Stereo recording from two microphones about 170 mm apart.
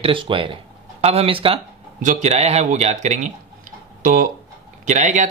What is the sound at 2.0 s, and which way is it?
Speech, 45° right (ahead or behind).